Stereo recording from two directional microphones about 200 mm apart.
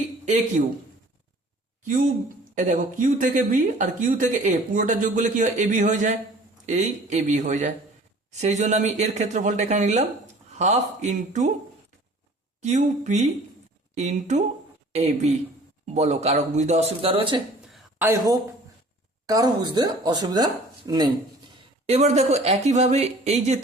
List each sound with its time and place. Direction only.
1.8 s speech: 40° right (ahead or behind)
12.6 s speech: 35° right (ahead or behind)
17.7 s a sound: centre (ahead or behind)
19.3 s speech: 20° right (ahead or behind)
21.8 s speech: 30° right (ahead or behind)